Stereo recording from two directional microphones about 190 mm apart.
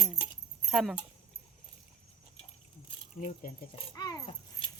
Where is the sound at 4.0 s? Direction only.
20° left (ahead or behind).